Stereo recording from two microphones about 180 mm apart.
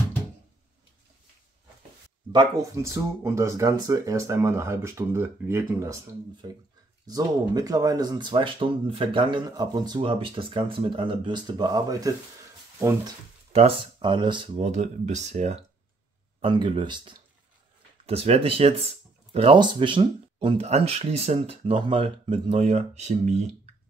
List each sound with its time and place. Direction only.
2.3 s speech: 15° right (ahead or behind)
13.5 s speech: 35° right (ahead or behind)
14.6 s speech: 40° right (ahead or behind)
16.3 s speech: 25° right (ahead or behind)